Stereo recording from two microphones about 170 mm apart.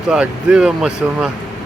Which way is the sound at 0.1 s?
5° right (ahead or behind).